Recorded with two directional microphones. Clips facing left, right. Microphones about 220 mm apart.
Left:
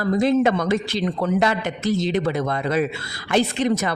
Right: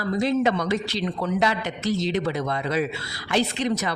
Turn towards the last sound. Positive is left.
turn(degrees=50)  # may be behind; listen again after turning